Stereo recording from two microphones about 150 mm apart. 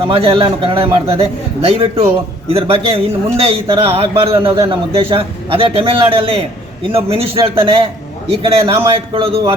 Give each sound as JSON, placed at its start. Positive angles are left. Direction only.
{"t": 0.0, "sound": "a man's voice", "side_deg": -40}